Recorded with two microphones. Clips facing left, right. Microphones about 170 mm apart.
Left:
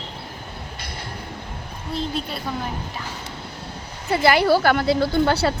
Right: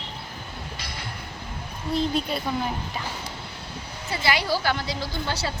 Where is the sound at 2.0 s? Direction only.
Centre (ahead or behind).